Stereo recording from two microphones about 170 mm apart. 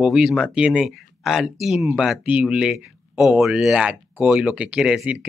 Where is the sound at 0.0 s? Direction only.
5° right (ahead or behind).